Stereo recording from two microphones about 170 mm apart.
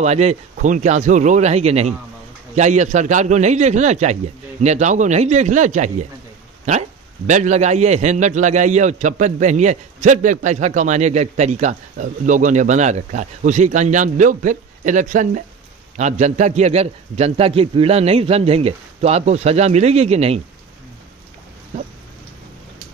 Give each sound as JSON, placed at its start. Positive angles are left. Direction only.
{"t": 0.0, "sound": "a man's voice", "side_deg": -40}